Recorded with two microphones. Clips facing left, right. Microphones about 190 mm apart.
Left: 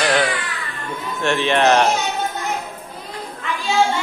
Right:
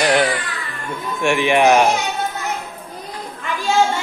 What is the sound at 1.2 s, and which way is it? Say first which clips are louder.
Speech: right 2 dB; 10° right (ahead or behind).